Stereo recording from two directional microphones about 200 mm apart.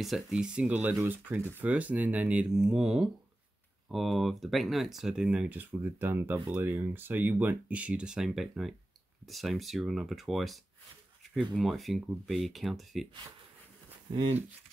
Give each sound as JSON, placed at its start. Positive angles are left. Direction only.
{"t": 0.0, "sound": "speech", "side_deg": 0}
{"t": 14.1, "sound": "speech", "side_deg": -25}